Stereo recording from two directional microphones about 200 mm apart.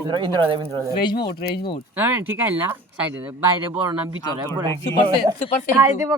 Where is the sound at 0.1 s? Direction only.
25° right (ahead or behind).